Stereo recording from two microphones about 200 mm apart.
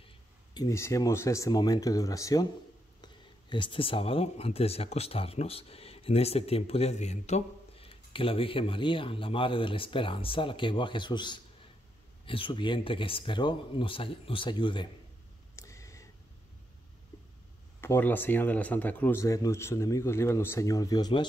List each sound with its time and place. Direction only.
0.6 s a man's voice: 15° left (ahead or behind)
15.5 s a sound: 15° left (ahead or behind)
17.7 s a man's voice: 10° left (ahead or behind)